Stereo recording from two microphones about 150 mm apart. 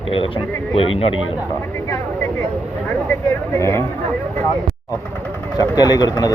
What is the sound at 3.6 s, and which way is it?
Speech, 15° left (ahead or behind).